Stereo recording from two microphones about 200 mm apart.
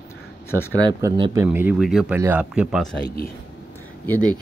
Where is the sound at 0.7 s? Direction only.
20° right (ahead or behind).